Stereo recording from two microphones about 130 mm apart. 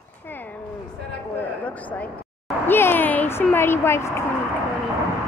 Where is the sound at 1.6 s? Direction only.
10° left (ahead or behind).